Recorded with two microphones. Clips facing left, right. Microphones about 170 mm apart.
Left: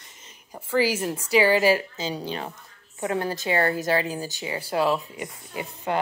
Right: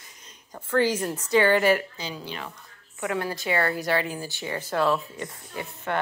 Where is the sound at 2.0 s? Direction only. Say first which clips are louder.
Left 5 dB; 35° left (ahead or behind).